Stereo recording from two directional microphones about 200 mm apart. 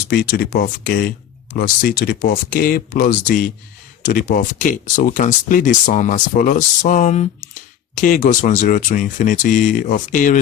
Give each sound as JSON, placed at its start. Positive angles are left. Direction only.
{"t": 0.1, "sound": "speech", "side_deg": 50}